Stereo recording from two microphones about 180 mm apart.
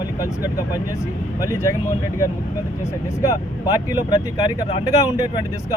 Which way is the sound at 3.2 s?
20° left (ahead or behind).